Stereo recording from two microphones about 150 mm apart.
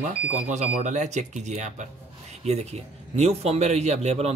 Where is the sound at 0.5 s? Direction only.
55° right (ahead or behind).